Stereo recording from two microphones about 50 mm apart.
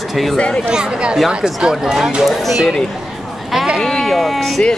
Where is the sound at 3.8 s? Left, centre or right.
Centre.